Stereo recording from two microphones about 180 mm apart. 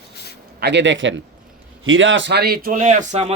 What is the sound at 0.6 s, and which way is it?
A man's voice, 75° right (ahead or behind).